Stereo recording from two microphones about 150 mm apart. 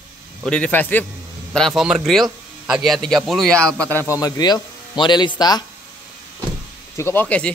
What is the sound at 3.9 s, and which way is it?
A man's voice, 15° left (ahead or behind).